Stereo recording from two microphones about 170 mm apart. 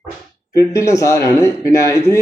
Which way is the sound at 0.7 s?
20° left (ahead or behind).